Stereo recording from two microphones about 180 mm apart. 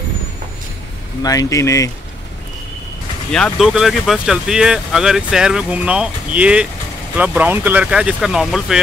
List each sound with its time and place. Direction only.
1.2 s speech: 20° left (ahead or behind)
3.3 s speech: 5° left (ahead or behind)